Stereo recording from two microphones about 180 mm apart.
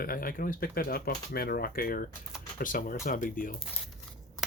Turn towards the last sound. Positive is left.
turn(degrees=50)  # may be behind; listen again after turning